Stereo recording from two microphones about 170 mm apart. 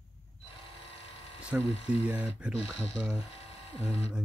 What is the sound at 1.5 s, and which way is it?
Speech, 10° right (ahead or behind).